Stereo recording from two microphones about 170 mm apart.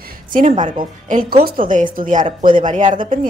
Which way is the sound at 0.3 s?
50° right (ahead or behind).